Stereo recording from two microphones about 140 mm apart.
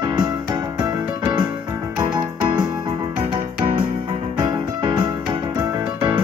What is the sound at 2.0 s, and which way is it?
Music, 30° right (ahead or behind).